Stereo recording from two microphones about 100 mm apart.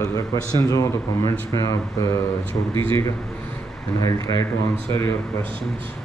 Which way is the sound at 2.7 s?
60° right (ahead or behind).